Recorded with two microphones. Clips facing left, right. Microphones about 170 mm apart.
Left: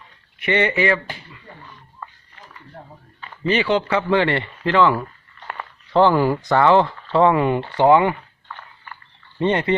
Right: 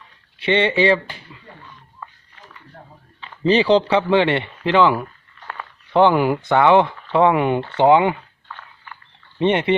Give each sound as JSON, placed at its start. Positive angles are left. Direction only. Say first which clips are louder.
{"t": 0.4, "sound": "speech", "louder": "right 2 dB", "side_deg": -25}
{"t": 3.4, "sound": "speech", "louder": "right 4 dB", "side_deg": -35}
{"t": 9.4, "sound": "speech", "louder": "right 2 dB", "side_deg": -20}